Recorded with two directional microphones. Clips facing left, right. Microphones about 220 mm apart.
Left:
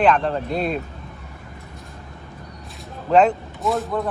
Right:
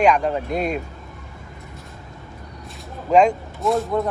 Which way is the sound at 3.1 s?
10° right (ahead or behind).